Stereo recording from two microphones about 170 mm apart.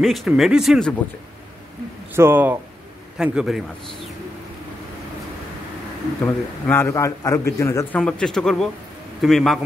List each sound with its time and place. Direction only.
0.0 s speech: centre (ahead or behind)
2.1 s speech: 10° right (ahead or behind)
6.2 s a man's voice: 15° left (ahead or behind)
8.0 s speech: 5° left (ahead or behind)